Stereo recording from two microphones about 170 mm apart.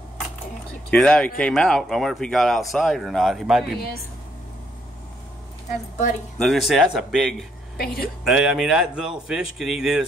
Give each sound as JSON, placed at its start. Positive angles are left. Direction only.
{"t": 0.8, "sound": "speech", "side_deg": 5}
{"t": 6.3, "sound": "speech", "side_deg": 0}
{"t": 7.7, "sound": "speech", "side_deg": 60}
{"t": 8.2, "sound": "speech", "side_deg": -5}